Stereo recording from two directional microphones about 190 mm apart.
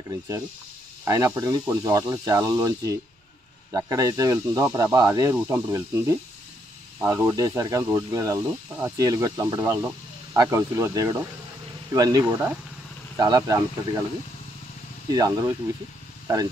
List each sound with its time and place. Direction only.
1.0 s speech: 15° right (ahead or behind)
15.1 s speech: 20° right (ahead or behind)